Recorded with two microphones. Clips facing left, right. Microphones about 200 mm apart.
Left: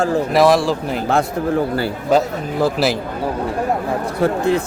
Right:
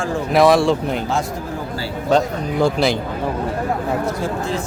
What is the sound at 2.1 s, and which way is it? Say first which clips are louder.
Speech: even; 5° left (ahead or behind).